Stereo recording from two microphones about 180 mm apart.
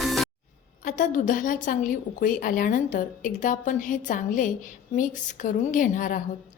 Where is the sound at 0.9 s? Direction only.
45° left (ahead or behind).